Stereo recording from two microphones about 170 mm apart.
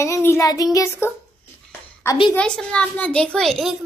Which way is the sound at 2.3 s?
5° left (ahead or behind).